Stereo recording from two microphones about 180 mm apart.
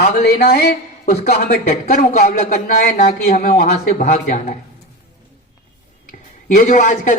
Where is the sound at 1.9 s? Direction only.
55° left (ahead or behind).